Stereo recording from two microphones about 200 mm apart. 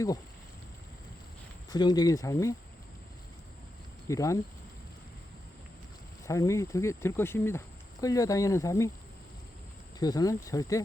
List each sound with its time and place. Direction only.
1.7 s speech: 20° left (ahead or behind)
4.1 s speech: 15° left (ahead or behind)
6.2 s speech: 15° left (ahead or behind)
10.0 s speech: 20° left (ahead or behind)